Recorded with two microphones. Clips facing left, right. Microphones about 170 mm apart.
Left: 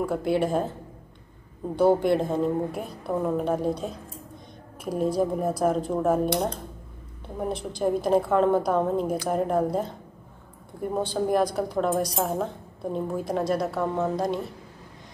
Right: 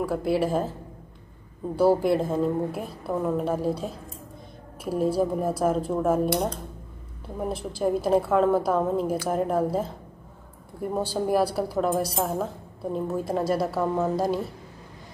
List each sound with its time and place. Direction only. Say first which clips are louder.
0.0 s a woman's voice: even; centre (ahead or behind)
1.8 s a woman's voice: even; 5° right (ahead or behind)